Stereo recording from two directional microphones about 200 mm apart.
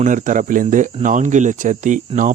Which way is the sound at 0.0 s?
40° right (ahead or behind).